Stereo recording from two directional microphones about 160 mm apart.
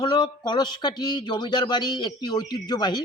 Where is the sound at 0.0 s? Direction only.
25° left (ahead or behind).